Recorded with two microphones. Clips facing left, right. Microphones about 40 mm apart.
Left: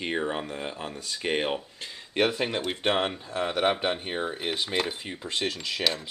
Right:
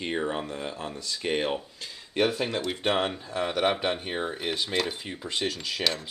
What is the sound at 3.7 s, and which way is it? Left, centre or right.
Cutlery, centre.